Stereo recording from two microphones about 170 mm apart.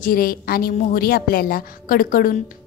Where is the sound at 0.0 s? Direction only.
60° left (ahead or behind).